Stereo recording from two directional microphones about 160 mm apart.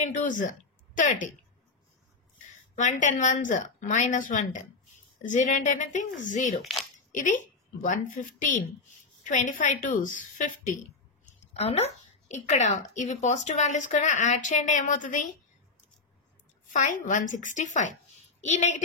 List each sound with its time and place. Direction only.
0.1 s speech: 55° left (ahead or behind)
2.4 s a woman's voice: 50° left (ahead or behind)
6.6 s speech: centre (ahead or behind)
7.1 s a woman's voice: 55° left (ahead or behind)
11.5 s speech: 40° left (ahead or behind)
16.6 s speech: 55° left (ahead or behind)